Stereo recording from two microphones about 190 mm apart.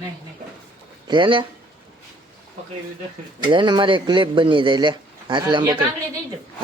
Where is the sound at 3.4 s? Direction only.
25° right (ahead or behind).